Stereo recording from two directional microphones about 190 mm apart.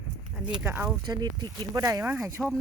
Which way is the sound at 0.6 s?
10° right (ahead or behind).